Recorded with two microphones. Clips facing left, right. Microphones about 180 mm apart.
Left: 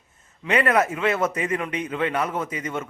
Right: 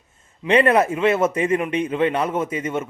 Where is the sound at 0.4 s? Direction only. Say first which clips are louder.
Right 5 dB; 25° right (ahead or behind).